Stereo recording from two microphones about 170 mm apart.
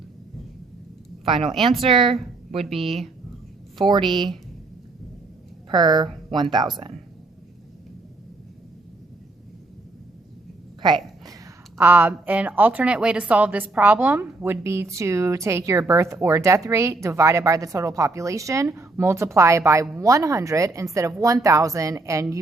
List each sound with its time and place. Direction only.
1.2 s a woman's voice: 30° right (ahead or behind)
2.6 s speech: centre (ahead or behind)
3.8 s a woman's voice: 30° right (ahead or behind)
5.7 s a woman's voice: 25° right (ahead or behind)
10.8 s a sound: 25° right (ahead or behind)
11.8 s a woman's voice: 10° right (ahead or behind)